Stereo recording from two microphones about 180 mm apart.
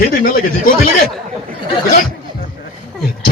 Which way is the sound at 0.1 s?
50° left (ahead or behind).